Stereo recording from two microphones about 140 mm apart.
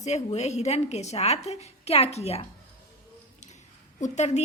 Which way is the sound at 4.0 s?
60° left (ahead or behind).